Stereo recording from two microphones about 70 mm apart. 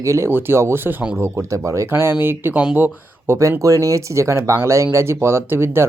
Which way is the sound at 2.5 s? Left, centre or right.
Centre.